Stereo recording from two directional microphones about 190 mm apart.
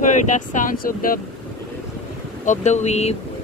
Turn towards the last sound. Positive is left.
turn(degrees=35)  # may be behind; listen again after turning